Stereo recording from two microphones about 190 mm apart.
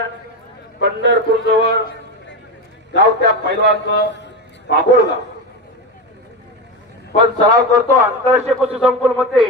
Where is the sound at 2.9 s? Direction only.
65° right (ahead or behind).